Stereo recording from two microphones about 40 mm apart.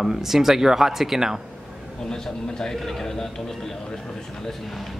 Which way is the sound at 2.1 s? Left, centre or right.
Centre.